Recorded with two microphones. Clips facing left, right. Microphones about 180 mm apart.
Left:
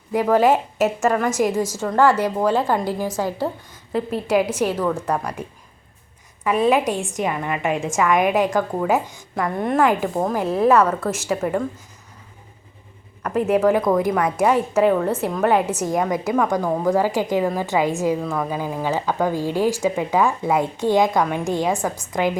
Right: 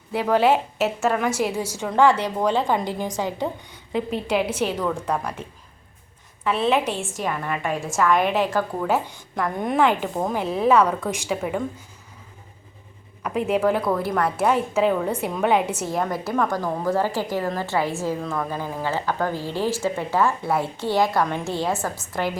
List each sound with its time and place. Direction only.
0.1 s a woman's voice: 10° left (ahead or behind)
0.9 s a woman's voice: 5° right (ahead or behind)
1.6 s a woman's voice: 10° left (ahead or behind)
8.8 s a woman's voice: 5° left (ahead or behind)
13.7 s a woman's voice: 15° left (ahead or behind)
14.3 s a woman's voice: centre (ahead or behind)
16.1 s a woman's voice: 15° left (ahead or behind)